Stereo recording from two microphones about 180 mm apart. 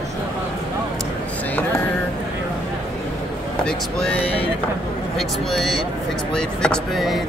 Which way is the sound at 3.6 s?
5° left (ahead or behind).